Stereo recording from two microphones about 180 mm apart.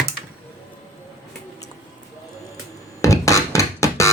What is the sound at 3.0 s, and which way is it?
Music, 15° left (ahead or behind).